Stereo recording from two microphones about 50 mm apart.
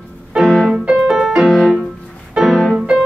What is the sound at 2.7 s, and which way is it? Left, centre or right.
Music, centre.